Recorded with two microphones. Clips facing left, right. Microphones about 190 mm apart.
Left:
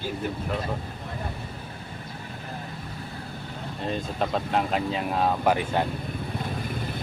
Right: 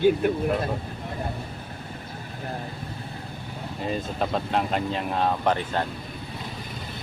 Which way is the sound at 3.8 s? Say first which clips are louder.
Right 1 dB; centre (ahead or behind).